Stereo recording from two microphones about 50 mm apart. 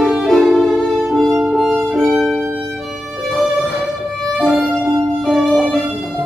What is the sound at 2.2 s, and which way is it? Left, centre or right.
Violin, centre.